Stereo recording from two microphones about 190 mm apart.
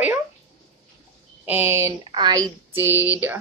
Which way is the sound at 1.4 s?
10° right (ahead or behind).